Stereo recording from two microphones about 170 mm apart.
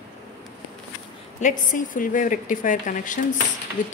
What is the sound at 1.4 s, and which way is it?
A woman's voice, 50° left (ahead or behind).